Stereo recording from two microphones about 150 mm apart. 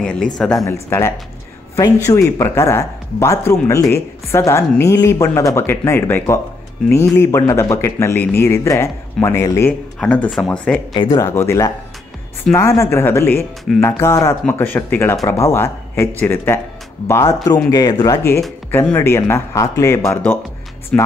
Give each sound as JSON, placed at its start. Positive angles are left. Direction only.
{"t": 0.0, "sound": "speech", "side_deg": 5}
{"t": 0.8, "sound": "speech", "side_deg": 15}
{"t": 2.3, "sound": "speech", "side_deg": 20}
{"t": 10.9, "sound": "speech", "side_deg": 25}
{"t": 20.9, "sound": "speech", "side_deg": 5}